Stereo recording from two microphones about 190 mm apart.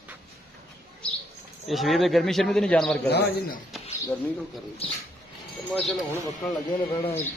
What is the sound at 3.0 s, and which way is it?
Speech, 60° left (ahead or behind).